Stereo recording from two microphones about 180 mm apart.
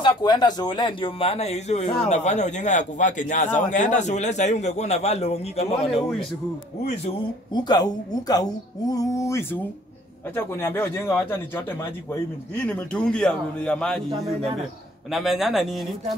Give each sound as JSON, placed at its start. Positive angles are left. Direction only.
{"t": 0.0, "sound": "a woman's voice", "side_deg": 25}
{"t": 7.5, "sound": "a woman's voice", "side_deg": 25}
{"t": 12.6, "sound": "a man's voice", "side_deg": 5}